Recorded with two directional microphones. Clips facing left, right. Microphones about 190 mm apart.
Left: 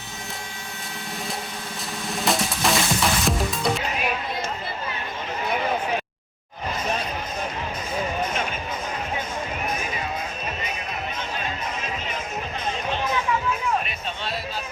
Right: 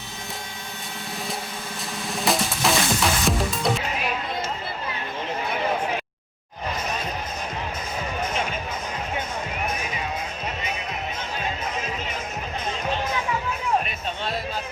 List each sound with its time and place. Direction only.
2.2 s music: centre (ahead or behind)